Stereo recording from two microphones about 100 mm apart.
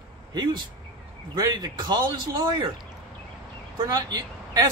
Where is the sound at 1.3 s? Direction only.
45° right (ahead or behind).